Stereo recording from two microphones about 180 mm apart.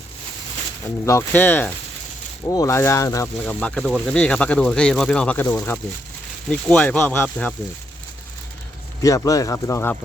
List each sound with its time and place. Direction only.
1.0 s speech: 15° left (ahead or behind)
3.4 s speech: 5° left (ahead or behind)
9.0 s speech: 20° left (ahead or behind)